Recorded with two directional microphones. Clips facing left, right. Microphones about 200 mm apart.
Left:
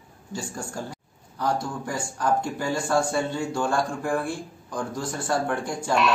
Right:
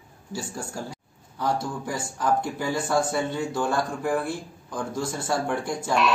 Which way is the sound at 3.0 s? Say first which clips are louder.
Even; 20° right (ahead or behind).